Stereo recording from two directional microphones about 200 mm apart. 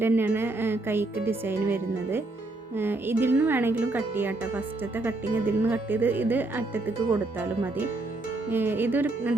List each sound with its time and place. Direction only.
0.0 s speech: 10° right (ahead or behind)